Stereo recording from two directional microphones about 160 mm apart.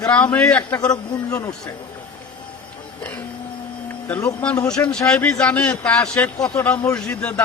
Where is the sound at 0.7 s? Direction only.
20° left (ahead or behind).